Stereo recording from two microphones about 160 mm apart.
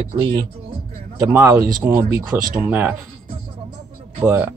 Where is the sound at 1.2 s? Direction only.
15° right (ahead or behind).